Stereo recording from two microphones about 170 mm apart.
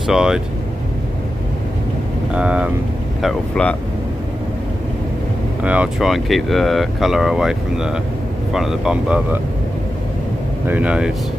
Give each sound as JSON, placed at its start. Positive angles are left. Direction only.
{"t": 0.0, "sound": "speech", "side_deg": -5}
{"t": 2.3, "sound": "speech", "side_deg": -5}
{"t": 5.6, "sound": "speech", "side_deg": -5}
{"t": 10.7, "sound": "speech", "side_deg": -5}